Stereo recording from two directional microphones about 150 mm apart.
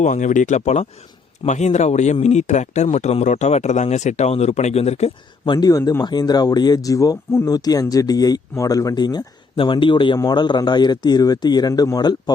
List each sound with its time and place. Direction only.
0.0 s speech: 55° left (ahead or behind)
5.5 s speech: 25° left (ahead or behind)